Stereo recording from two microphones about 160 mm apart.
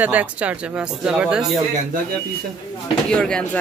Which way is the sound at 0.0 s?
10° right (ahead or behind).